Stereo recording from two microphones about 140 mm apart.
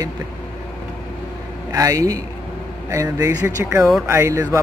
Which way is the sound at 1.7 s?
25° right (ahead or behind).